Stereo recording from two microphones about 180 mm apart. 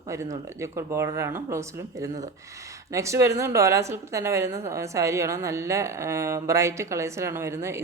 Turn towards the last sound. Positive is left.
turn(degrees=-15)  # may be behind; listen again after turning